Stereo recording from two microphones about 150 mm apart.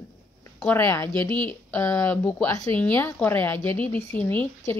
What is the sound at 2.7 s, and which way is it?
Speech, 10° left (ahead or behind).